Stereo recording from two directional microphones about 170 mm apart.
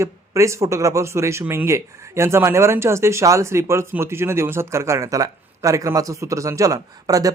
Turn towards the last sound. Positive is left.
turn(degrees=-20)  # may be behind; listen again after turning